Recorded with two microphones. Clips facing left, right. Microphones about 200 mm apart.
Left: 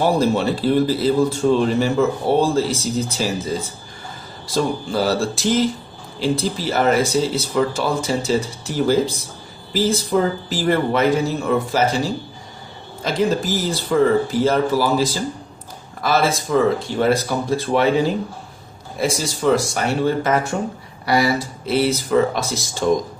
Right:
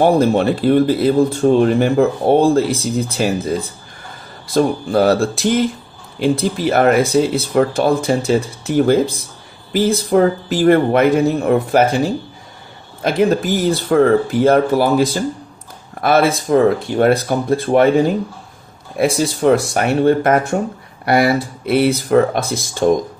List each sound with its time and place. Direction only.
0.0 s speech: 55° right (ahead or behind)
13.0 s speech: 60° right (ahead or behind)
18.9 s speech: 60° right (ahead or behind)